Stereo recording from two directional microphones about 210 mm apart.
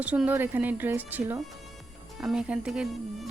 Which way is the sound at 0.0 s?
5° right (ahead or behind).